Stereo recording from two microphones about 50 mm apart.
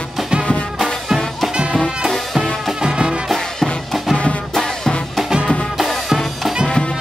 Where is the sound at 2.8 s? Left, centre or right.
Centre.